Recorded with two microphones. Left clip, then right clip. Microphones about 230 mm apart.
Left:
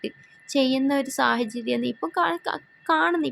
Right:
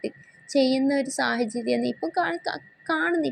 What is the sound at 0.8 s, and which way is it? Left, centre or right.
Speech, centre.